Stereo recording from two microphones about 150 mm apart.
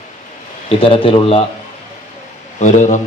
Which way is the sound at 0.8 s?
35° left (ahead or behind).